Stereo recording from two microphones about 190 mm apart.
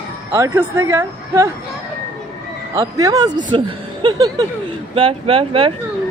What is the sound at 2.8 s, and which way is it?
Speech, 20° right (ahead or behind).